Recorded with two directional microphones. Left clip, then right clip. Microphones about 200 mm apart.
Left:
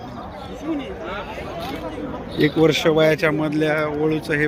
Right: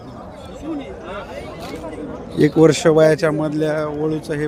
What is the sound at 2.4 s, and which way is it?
Speech, 45° right (ahead or behind).